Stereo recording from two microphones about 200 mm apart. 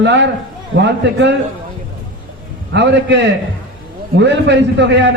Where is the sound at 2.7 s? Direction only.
60° right (ahead or behind).